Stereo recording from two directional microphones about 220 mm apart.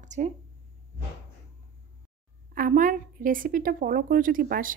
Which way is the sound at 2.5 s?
35° right (ahead or behind).